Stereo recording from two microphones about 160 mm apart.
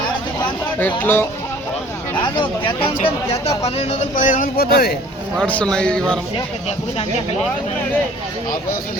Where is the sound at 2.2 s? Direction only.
30° left (ahead or behind); by 5.0 s 75° left (ahead or behind).